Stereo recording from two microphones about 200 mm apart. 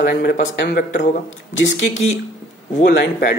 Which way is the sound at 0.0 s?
50° left (ahead or behind).